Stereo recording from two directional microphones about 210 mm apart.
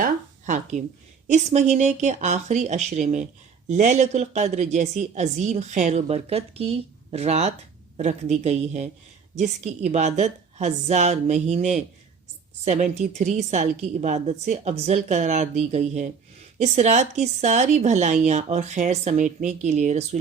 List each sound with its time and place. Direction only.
0.0 s speech: 35° right (ahead or behind)